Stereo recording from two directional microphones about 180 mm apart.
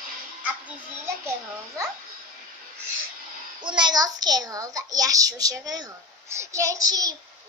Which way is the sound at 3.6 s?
25° right (ahead or behind).